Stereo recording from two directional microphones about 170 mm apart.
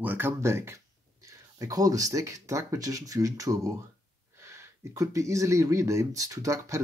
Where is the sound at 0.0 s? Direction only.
10° right (ahead or behind).